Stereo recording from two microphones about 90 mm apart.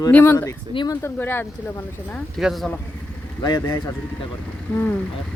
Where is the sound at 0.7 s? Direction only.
75° left (ahead or behind).